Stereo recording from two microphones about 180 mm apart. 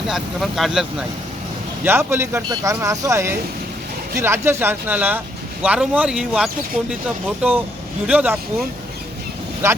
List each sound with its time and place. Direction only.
0.1 s speech: centre (ahead or behind)
1.8 s speech: 15° right (ahead or behind)
9.6 s speech: 15° right (ahead or behind)